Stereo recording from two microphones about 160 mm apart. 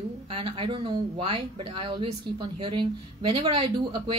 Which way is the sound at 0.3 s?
35° right (ahead or behind).